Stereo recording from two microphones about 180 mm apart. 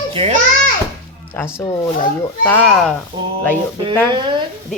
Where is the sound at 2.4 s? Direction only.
10° left (ahead or behind).